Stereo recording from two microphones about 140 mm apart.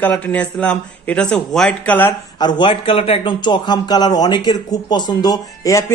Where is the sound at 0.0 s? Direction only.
10° left (ahead or behind).